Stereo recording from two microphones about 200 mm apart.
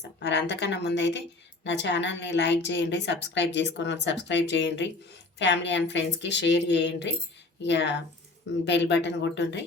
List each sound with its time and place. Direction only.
0.2 s a woman's voice: 60° left (ahead or behind)